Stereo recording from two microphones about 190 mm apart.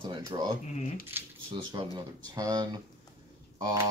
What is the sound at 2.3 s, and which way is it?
Speech, 20° right (ahead or behind).